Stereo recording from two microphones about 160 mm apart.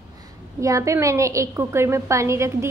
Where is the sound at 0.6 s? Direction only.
20° right (ahead or behind).